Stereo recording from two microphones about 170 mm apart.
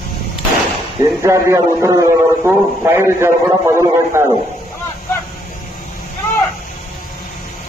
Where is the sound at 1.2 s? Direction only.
15° right (ahead or behind).